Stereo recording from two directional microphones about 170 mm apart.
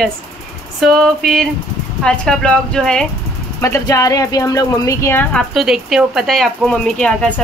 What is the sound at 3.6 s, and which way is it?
Speech, 15° left (ahead or behind).